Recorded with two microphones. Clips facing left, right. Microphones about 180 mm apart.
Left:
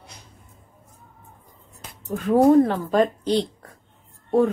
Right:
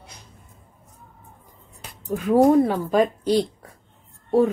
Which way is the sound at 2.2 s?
10° right (ahead or behind).